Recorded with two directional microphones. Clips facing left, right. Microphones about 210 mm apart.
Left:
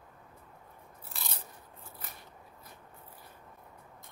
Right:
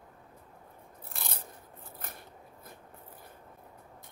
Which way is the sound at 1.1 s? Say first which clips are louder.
Right 2 dB; 55° right (ahead or behind).